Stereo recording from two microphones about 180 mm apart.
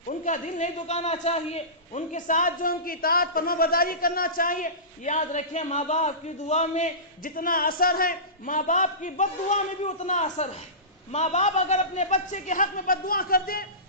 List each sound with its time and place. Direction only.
0.1 s a man's voice: 45° left (ahead or behind)